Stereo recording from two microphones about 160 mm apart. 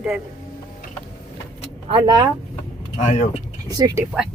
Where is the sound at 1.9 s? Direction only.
25° right (ahead or behind).